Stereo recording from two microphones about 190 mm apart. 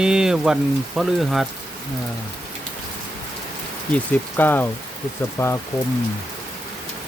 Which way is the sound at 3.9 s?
10° left (ahead or behind).